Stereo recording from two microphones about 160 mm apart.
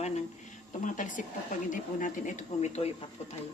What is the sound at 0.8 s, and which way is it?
Speech, 55° left (ahead or behind).